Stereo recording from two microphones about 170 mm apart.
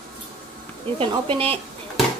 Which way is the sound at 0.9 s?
30° right (ahead or behind).